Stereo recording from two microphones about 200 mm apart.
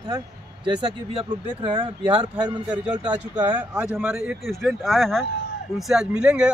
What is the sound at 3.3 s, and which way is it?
Speech, 20° right (ahead or behind).